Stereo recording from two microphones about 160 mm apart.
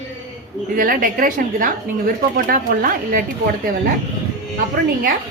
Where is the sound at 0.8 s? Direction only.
60° right (ahead or behind).